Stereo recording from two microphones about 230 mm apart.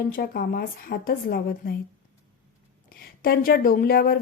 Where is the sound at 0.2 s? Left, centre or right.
Left.